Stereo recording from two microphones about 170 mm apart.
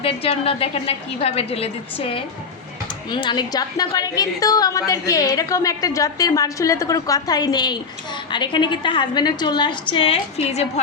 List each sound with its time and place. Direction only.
0.0 s a woman's voice: 35° left (ahead or behind)